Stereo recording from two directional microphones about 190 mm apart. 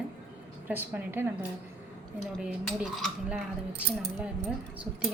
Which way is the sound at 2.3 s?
5° right (ahead or behind).